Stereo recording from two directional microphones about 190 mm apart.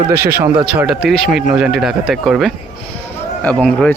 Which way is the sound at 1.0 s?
55° right (ahead or behind).